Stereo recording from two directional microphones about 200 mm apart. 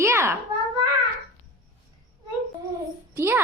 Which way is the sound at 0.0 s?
15° right (ahead or behind).